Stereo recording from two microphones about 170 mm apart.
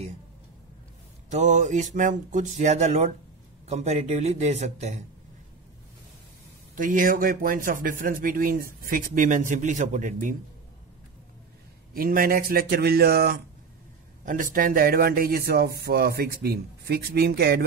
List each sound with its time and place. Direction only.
1.3 s a man's voice: 45° right (ahead or behind)
6.7 s a man's voice: 55° right (ahead or behind)
11.9 s speech: 55° right (ahead or behind)
14.2 s speech: 50° right (ahead or behind)